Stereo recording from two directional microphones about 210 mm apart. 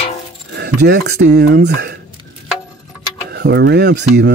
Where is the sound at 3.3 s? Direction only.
55° right (ahead or behind).